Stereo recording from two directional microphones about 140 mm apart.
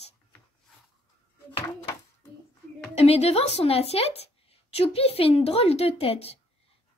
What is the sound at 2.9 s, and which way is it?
A woman's voice, 45° left (ahead or behind).